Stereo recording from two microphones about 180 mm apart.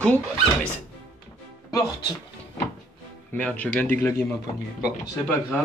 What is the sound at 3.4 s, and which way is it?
Speech, 5° left (ahead or behind).